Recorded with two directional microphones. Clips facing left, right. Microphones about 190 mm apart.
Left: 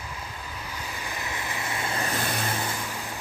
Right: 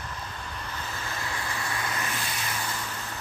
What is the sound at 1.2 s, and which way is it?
Vehicle, 20° left (ahead or behind).